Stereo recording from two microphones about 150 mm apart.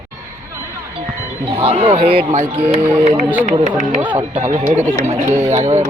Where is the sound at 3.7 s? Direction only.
55° right (ahead or behind).